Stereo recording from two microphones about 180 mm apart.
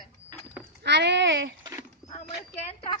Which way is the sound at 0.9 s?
70° right (ahead or behind).